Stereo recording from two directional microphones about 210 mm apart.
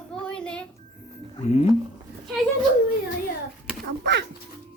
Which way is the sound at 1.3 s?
30° left (ahead or behind).